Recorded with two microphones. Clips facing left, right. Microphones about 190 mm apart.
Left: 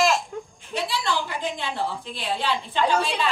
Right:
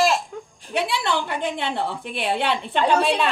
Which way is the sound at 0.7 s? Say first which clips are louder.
Right 3 dB; 60° right (ahead or behind).